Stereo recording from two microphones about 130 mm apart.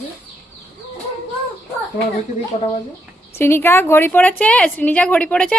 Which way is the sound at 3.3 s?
20° left (ahead or behind).